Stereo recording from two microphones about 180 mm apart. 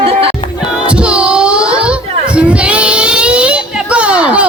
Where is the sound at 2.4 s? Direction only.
5° right (ahead or behind).